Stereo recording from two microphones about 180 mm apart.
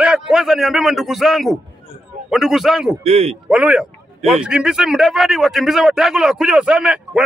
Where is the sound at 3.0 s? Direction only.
35° right (ahead or behind).